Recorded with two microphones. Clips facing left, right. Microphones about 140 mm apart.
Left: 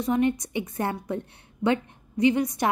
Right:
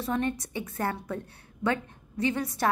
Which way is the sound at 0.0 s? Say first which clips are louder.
Left 6 dB; 15° left (ahead or behind).